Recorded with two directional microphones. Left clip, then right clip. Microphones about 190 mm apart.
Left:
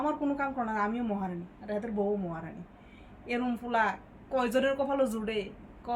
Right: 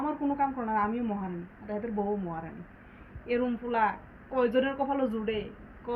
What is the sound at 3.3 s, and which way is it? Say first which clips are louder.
A woman's voice: right 2 dB; 30° left (ahead or behind).